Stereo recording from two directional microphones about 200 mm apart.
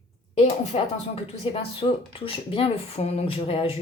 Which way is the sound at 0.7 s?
30° left (ahead or behind).